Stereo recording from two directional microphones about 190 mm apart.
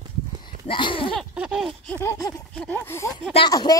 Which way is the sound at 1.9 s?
15° left (ahead or behind).